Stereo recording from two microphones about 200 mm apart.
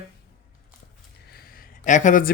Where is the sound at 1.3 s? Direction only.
45° left (ahead or behind).